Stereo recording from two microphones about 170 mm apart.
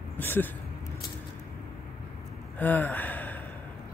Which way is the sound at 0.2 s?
10° left (ahead or behind).